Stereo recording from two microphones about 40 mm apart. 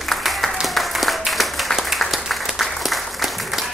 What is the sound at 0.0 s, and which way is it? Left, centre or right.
Applause, centre.